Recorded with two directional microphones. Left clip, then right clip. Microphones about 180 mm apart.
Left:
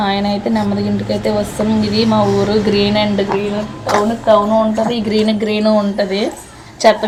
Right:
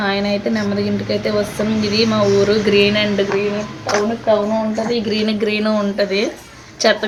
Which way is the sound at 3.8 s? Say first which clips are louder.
Left 4 dB; 30° left (ahead or behind).